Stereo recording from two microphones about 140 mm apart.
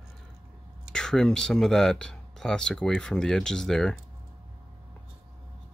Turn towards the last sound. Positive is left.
turn(degrees=5)  # may be behind; listen again after turning